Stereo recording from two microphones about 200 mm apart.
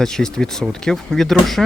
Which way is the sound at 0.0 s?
5° left (ahead or behind).